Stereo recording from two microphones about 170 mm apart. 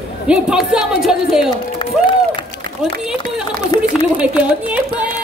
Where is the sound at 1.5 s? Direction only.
25° left (ahead or behind).